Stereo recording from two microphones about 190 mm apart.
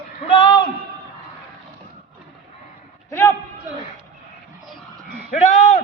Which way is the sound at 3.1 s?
15° left (ahead or behind).